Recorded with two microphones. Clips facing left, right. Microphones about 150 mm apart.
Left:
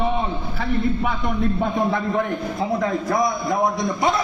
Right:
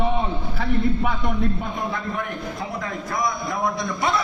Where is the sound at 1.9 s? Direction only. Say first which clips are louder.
Left 6 dB; 25° left (ahead or behind).